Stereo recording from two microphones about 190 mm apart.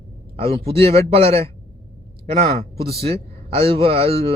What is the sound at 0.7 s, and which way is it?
Speech, 30° right (ahead or behind).